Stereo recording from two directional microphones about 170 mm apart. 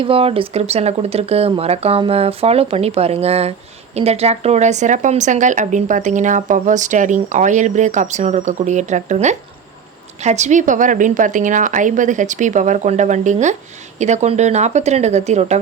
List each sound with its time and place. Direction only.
0.0 s speech: 35° right (ahead or behind)